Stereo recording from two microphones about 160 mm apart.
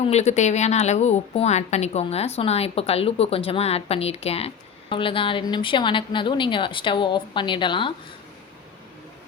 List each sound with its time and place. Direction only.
0.0 s a woman's voice: 45° left (ahead or behind)